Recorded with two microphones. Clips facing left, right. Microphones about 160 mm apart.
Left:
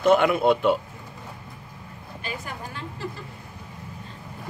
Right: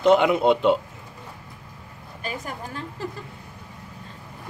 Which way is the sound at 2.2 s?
40° right (ahead or behind).